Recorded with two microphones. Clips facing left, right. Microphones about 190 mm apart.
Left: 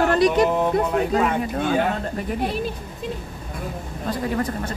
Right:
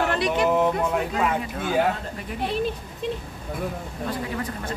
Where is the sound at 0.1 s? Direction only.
40° left (ahead or behind).